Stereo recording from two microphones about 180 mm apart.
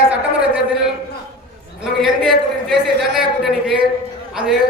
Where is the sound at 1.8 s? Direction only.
Centre (ahead or behind).